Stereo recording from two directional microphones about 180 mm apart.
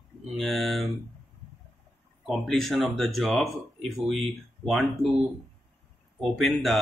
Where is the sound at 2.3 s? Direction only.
Centre (ahead or behind).